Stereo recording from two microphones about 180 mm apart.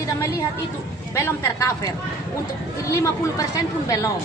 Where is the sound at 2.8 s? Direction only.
20° left (ahead or behind).